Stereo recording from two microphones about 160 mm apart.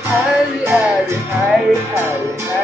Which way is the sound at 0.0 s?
10° right (ahead or behind).